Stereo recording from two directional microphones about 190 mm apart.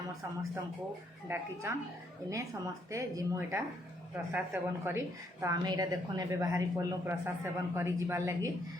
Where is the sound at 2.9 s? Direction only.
15° right (ahead or behind).